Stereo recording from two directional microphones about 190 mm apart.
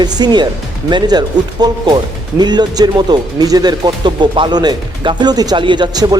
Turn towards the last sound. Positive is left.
turn(degrees=-20)  # may be behind; listen again after turning